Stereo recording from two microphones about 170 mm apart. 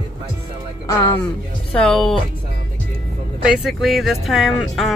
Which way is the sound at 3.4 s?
5° right (ahead or behind).